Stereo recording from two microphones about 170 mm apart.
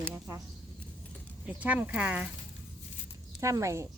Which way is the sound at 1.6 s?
10° right (ahead or behind).